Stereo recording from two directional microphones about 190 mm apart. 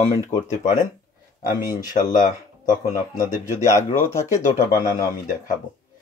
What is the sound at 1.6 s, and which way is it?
Speech, 45° left (ahead or behind).